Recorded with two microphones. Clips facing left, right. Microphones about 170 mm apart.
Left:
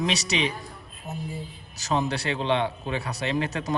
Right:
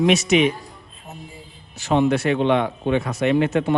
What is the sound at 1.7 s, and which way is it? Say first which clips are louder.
Speech: right 8 dB; 40° left (ahead or behind).